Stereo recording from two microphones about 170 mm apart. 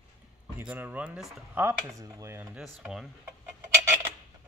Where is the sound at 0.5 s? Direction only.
10° right (ahead or behind).